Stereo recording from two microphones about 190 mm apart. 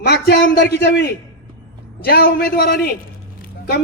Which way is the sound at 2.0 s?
55° left (ahead or behind).